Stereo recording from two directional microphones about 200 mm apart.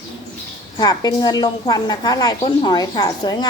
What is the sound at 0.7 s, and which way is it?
A woman's voice, 20° left (ahead or behind).